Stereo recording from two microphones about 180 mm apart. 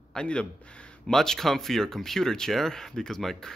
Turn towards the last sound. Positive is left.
turn(degrees=0)  # may be behind; listen again after turning